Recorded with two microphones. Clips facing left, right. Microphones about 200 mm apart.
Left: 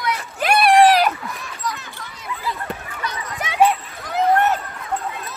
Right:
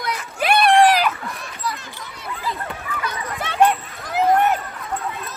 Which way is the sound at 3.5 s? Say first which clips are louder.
Even; 5° left (ahead or behind).